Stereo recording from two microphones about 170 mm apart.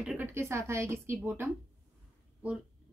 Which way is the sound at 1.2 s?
5° right (ahead or behind).